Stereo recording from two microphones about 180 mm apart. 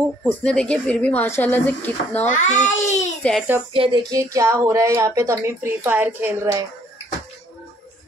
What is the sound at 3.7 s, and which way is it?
Speech, 25° right (ahead or behind).